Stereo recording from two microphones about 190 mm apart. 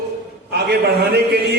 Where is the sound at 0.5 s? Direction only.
60° right (ahead or behind).